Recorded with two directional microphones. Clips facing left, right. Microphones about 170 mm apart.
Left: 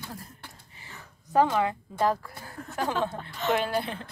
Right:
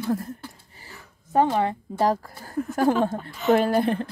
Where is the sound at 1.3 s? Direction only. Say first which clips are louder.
Right 2 dB; 25° right (ahead or behind).